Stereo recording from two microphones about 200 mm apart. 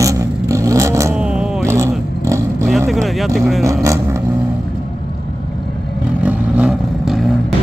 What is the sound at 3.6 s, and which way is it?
Vehicle, 15° right (ahead or behind).